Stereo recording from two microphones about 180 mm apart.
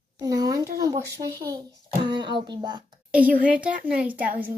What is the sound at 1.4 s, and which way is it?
A child's voice, 25° right (ahead or behind).